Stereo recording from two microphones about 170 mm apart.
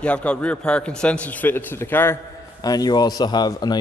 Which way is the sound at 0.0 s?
5° left (ahead or behind).